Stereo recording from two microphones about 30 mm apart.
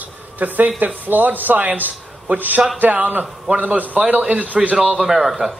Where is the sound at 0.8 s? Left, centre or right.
Right.